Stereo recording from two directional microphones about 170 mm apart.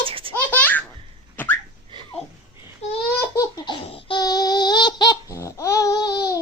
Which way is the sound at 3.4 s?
25° left (ahead or behind).